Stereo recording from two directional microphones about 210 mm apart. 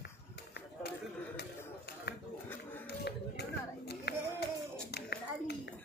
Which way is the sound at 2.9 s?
50° left (ahead or behind).